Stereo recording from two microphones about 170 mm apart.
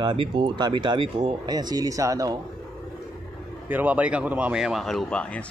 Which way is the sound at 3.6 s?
10° right (ahead or behind).